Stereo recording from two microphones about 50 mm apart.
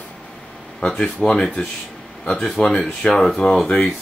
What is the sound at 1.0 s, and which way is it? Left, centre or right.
Speech, left.